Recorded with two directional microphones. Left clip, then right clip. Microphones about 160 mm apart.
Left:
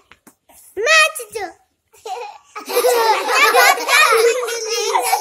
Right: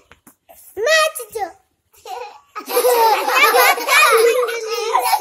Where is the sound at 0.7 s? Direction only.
5° right (ahead or behind).